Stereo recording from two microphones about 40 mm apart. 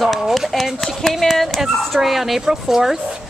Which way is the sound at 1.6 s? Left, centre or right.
Centre.